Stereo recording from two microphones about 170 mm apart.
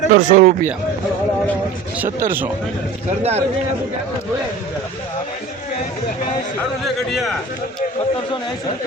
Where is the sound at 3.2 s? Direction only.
40° right (ahead or behind).